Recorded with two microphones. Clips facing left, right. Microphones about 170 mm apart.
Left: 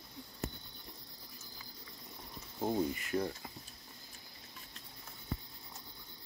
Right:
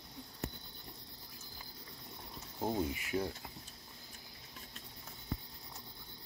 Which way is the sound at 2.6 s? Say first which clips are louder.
Left 2 dB; 5° right (ahead or behind).